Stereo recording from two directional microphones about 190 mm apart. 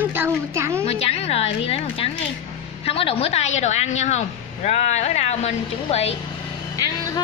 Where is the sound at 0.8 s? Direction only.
30° left (ahead or behind).